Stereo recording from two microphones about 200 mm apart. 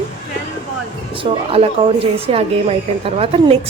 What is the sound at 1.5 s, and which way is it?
A woman's voice, 30° right (ahead or behind).